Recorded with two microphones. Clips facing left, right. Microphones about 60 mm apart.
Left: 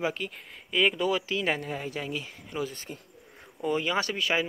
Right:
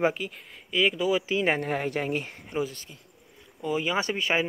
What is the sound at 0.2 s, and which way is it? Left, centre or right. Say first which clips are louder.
Speech: right 1 dB; centre.